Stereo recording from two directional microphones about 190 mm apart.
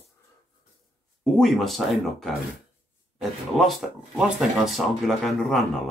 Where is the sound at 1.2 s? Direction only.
Centre (ahead or behind).